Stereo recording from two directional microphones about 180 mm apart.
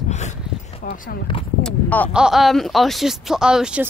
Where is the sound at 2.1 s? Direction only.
5° right (ahead or behind).